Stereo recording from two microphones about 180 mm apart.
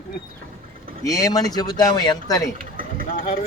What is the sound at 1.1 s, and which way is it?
Speech, 20° left (ahead or behind).